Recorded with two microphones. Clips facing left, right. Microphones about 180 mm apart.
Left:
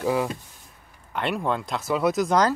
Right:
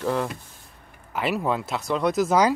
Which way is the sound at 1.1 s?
5° right (ahead or behind).